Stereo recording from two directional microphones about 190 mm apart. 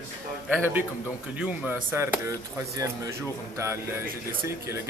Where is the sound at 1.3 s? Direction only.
5° right (ahead or behind).